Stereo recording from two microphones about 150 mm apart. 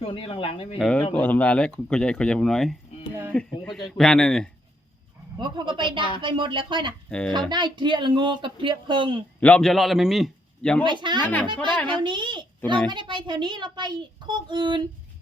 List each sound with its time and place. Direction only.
0.0 s speech: 35° left (ahead or behind)
0.8 s speech: 5° left (ahead or behind)
5.4 s a child's voice: 30° right (ahead or behind)
7.1 s speech: 5° left (ahead or behind)
7.5 s a child's voice: 30° right (ahead or behind)
9.4 s speech: 5° left (ahead or behind)
10.8 s a child's voice: 30° right (ahead or behind)